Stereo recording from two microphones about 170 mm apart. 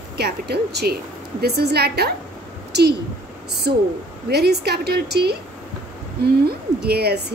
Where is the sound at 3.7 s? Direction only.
75° right (ahead or behind).